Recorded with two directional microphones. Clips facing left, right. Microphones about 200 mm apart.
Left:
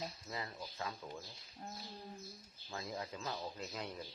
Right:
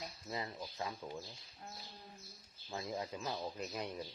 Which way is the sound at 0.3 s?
20° right (ahead or behind).